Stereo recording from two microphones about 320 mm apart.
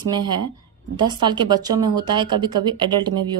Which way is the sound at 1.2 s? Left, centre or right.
Centre.